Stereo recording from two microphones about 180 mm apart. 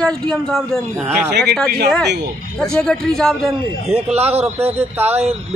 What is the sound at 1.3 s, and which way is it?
Speech, 65° right (ahead or behind).